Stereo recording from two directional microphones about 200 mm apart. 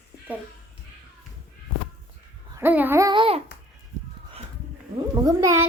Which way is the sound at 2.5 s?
10° right (ahead or behind).